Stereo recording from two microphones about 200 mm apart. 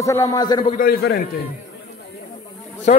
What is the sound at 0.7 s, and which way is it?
Speech, 50° left (ahead or behind).